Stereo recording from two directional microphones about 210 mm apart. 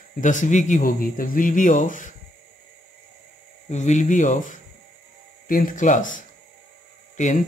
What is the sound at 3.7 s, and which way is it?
Speech, 35° left (ahead or behind).